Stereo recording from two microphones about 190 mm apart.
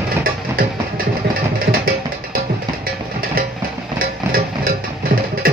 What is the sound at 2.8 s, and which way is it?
Music, 50° right (ahead or behind).